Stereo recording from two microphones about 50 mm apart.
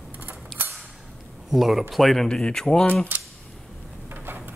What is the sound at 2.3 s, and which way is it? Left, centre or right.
Speech, centre.